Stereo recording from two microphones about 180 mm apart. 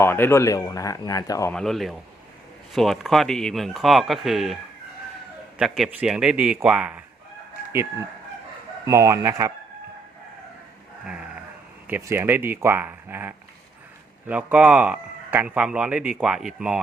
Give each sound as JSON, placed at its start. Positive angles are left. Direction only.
{"t": 0.0, "sound": "speech", "side_deg": 15}
{"t": 1.5, "sound": "speech", "side_deg": 0}
{"t": 5.5, "sound": "speech", "side_deg": 0}
{"t": 8.9, "sound": "a man's voice", "side_deg": -15}
{"t": 11.0, "sound": "a sound", "side_deg": -5}
{"t": 11.9, "sound": "a man's voice", "side_deg": -15}